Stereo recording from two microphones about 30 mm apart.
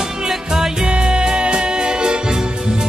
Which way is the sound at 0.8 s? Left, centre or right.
Right.